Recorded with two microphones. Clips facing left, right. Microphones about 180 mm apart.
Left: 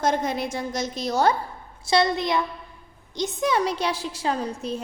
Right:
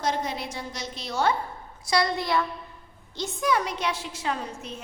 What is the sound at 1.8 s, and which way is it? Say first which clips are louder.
A woman's voice: left 4 dB; 25° left (ahead or behind).